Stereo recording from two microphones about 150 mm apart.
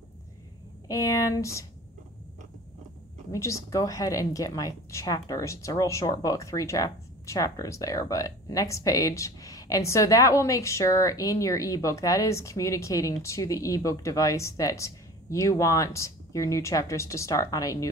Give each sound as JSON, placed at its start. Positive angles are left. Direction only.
{"t": 0.8, "sound": "speech", "side_deg": 25}
{"t": 3.3, "sound": "speech", "side_deg": 20}